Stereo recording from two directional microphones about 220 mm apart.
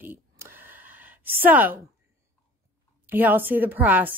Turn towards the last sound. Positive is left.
turn(degrees=-10)  # may be behind; listen again after turning